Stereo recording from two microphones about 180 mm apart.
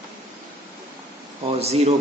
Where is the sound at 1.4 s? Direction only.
35° right (ahead or behind).